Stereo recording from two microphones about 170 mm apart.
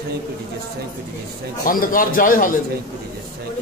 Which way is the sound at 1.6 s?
55° left (ahead or behind).